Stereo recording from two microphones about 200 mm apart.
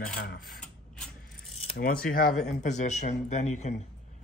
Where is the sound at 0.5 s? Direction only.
5° left (ahead or behind).